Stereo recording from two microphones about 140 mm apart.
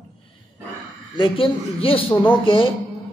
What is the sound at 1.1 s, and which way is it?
A man's voice, 35° left (ahead or behind).